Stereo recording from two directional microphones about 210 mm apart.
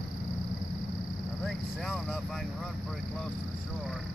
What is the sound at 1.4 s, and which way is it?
Vehicle, centre (ahead or behind).